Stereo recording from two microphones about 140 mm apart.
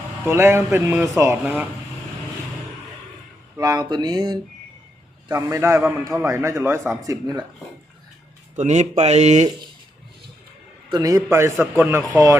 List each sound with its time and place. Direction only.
0.3 s a man's voice: 15° right (ahead or behind)
3.6 s a man's voice: 30° right (ahead or behind)
8.5 s speech: 60° right (ahead or behind)
10.9 s a man's voice: 25° right (ahead or behind)